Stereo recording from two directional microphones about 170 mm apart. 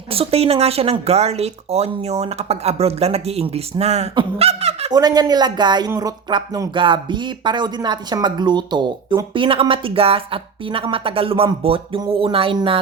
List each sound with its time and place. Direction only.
0.1 s speech: 35° right (ahead or behind)
4.9 s speech: 25° right (ahead or behind)